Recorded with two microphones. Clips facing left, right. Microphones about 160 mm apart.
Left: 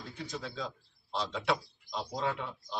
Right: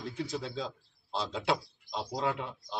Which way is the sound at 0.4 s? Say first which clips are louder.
Right 2 dB; 25° right (ahead or behind).